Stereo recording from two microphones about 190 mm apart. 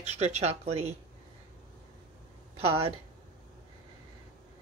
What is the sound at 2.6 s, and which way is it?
Speech, 30° right (ahead or behind).